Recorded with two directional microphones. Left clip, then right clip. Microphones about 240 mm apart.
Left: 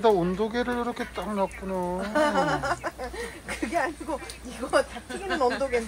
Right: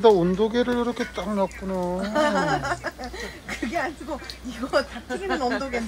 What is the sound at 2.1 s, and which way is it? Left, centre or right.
Speech, left.